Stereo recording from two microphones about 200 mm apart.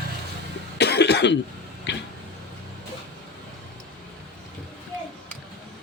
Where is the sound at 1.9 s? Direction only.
65° left (ahead or behind).